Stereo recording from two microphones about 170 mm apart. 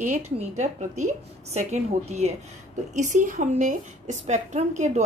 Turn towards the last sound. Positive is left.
turn(degrees=-45)  # may be behind; listen again after turning